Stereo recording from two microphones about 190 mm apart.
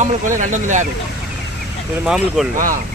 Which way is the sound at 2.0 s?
5° right (ahead or behind).